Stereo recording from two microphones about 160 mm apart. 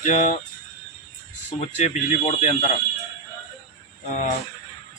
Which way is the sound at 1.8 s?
50° left (ahead or behind).